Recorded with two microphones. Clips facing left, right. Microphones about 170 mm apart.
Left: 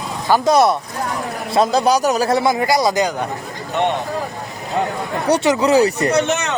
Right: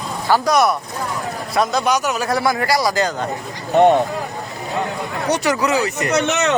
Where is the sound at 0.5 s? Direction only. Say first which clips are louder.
Left 2 dB; 30° left (ahead or behind).